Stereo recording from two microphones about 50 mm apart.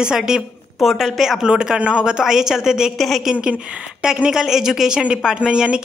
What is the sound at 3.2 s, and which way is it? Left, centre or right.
Speech, centre.